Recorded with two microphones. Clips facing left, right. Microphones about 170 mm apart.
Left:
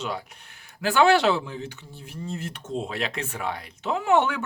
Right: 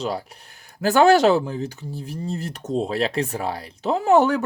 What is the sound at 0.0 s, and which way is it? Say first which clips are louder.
Speech: right 5 dB; 35° right (ahead or behind).